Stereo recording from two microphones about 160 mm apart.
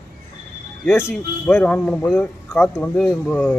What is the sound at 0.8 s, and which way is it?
Speech, 15° left (ahead or behind).